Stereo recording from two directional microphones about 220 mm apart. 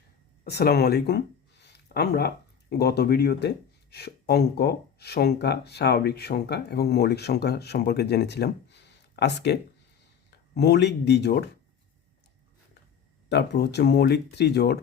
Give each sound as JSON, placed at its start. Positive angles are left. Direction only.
{"t": 0.4, "sound": "speech", "side_deg": 45}
{"t": 13.2, "sound": "speech", "side_deg": 50}